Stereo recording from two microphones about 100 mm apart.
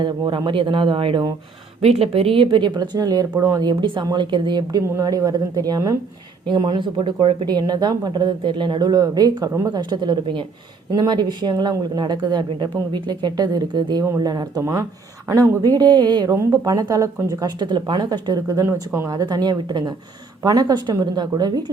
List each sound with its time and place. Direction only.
0.0 s speech: 50° right (ahead or behind)
1.8 s speech: 90° right; by 3.7 s 35° right (ahead or behind)
3.7 s speech: 55° right (ahead or behind); by 6.0 s 40° right (ahead or behind)
6.5 s speech: 50° right (ahead or behind)
14.6 s speech: 30° right (ahead or behind)
17.4 s speech: 45° right (ahead or behind)
19.1 s speech: 45° right (ahead or behind)